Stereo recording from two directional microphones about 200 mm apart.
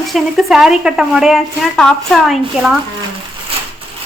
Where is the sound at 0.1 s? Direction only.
Centre (ahead or behind).